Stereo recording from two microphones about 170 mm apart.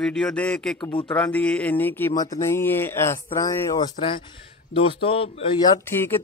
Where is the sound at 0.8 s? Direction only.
30° left (ahead or behind).